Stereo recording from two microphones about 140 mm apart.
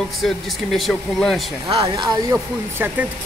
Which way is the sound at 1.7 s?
40° right (ahead or behind).